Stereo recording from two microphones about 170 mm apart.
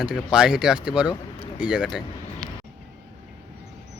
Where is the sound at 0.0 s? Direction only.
5° right (ahead or behind).